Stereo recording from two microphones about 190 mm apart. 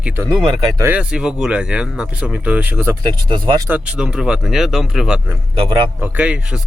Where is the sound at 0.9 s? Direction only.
5° right (ahead or behind); by 3.7 s 25° right (ahead or behind).